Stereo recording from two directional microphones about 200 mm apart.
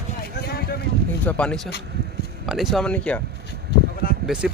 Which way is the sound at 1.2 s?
5° left (ahead or behind).